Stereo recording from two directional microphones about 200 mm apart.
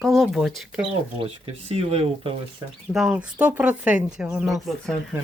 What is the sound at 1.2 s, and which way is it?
Speech, 30° right (ahead or behind).